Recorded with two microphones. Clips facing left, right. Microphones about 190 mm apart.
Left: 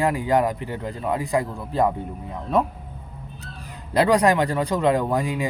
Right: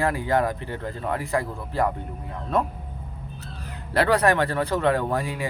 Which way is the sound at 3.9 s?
15° left (ahead or behind).